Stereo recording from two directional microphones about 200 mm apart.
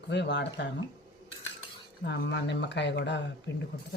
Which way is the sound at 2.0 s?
60° left (ahead or behind).